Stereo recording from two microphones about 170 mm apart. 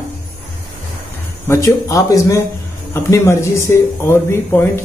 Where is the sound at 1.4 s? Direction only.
15° left (ahead or behind).